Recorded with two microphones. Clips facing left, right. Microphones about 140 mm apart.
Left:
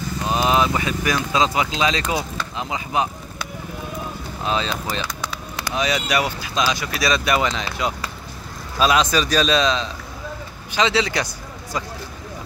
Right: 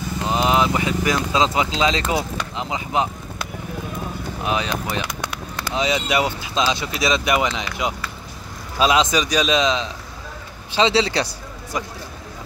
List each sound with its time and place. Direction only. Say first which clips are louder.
0.2 s speech: even; 20° right (ahead or behind)
4.4 s speech: even; 15° right (ahead or behind)
8.7 s speech: even; 20° right (ahead or behind)